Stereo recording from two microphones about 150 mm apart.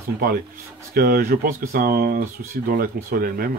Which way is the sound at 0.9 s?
90° right.